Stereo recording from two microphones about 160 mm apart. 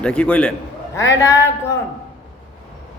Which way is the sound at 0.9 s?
20° left (ahead or behind).